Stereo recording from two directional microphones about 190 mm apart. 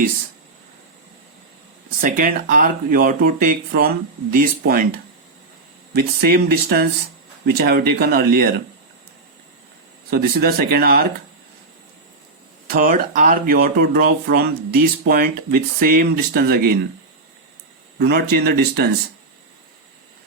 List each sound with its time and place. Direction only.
2.0 s speech: 45° right (ahead or behind)
5.9 s speech: 55° right (ahead or behind)
10.1 s speech: 55° right (ahead or behind)
12.6 s speech: 50° right (ahead or behind)
18.0 s speech: 55° right (ahead or behind)